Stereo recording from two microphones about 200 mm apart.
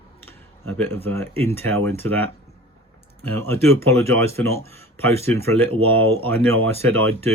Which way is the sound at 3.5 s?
10° left (ahead or behind).